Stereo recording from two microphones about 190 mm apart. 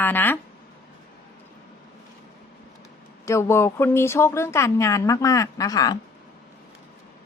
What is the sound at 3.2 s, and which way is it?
Speech, 15° left (ahead or behind).